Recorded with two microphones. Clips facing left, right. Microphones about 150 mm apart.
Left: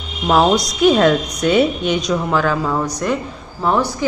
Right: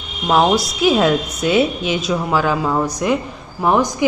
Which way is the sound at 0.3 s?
Centre (ahead or behind).